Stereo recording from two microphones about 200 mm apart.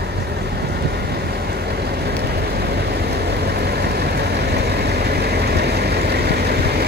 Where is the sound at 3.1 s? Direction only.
50° right (ahead or behind).